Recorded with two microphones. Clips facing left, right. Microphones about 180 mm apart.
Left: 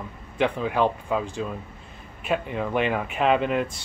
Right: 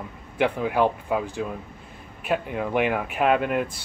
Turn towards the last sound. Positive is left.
turn(degrees=-5)  # may be behind; listen again after turning